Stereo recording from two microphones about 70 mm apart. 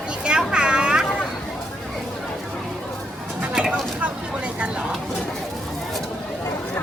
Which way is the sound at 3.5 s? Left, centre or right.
Centre.